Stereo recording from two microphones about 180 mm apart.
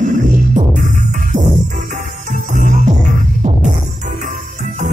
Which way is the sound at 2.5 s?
40° right (ahead or behind).